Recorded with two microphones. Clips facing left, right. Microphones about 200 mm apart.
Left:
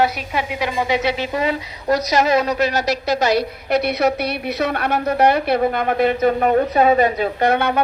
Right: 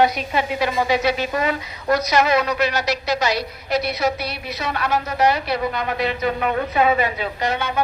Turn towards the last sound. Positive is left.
turn(degrees=60)  # may be behind; listen again after turning